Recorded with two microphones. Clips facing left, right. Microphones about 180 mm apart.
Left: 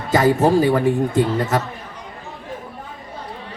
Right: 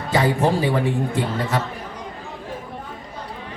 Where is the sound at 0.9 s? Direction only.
45° left (ahead or behind).